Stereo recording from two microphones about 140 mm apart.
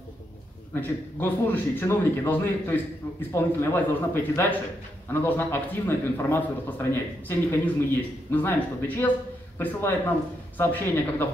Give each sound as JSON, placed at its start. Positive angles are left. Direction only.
{"t": 0.7, "sound": "a man's voice", "side_deg": 15}